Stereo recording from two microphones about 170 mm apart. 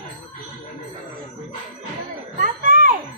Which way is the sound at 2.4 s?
50° right (ahead or behind).